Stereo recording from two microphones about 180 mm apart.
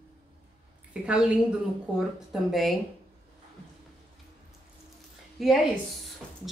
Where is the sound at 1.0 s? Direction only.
5° right (ahead or behind).